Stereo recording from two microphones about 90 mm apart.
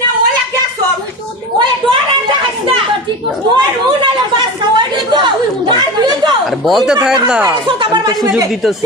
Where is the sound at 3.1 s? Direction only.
65° right (ahead or behind).